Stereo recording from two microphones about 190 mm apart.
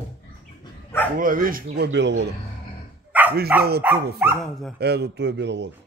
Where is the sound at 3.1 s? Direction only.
10° right (ahead or behind).